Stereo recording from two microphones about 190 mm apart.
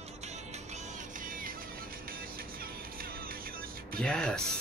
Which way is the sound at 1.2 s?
45° right (ahead or behind).